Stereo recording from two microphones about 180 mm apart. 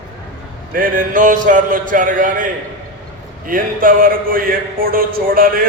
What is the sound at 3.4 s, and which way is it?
A man's voice, 50° right (ahead or behind).